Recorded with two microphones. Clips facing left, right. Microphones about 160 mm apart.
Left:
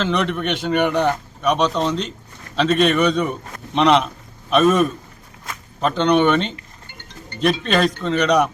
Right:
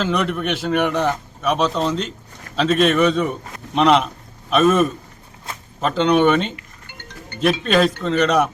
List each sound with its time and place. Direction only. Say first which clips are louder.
0.0 s a man's voice: even; 5° right (ahead or behind)
5.5 s a sound: even; 30° right (ahead or behind)
5.8 s speech: even; 5° right (ahead or behind)
7.6 s speech: right 2 dB; centre (ahead or behind)